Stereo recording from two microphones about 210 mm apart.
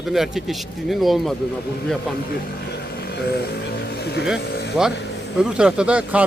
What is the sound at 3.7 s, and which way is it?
Vehicle, 50° left (ahead or behind).